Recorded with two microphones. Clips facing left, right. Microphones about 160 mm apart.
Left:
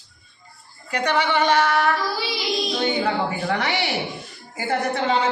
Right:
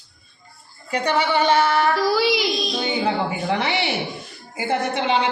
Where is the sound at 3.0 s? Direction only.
25° right (ahead or behind).